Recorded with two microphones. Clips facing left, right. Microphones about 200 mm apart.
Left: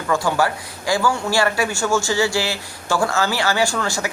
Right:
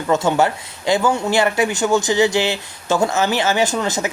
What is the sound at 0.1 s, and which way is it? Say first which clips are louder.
Speech: right 3 dB; 25° right (ahead or behind).